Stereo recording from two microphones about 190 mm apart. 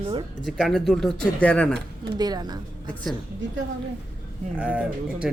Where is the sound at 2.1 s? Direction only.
20° right (ahead or behind).